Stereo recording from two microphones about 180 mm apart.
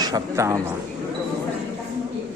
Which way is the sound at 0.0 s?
20° right (ahead or behind).